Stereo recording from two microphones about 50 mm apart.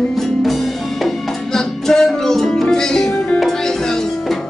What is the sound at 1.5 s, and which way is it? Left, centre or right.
Music, centre.